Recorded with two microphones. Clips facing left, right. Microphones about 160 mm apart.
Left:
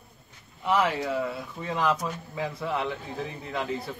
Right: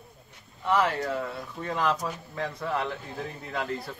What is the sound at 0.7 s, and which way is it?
Speech, 5° left (ahead or behind).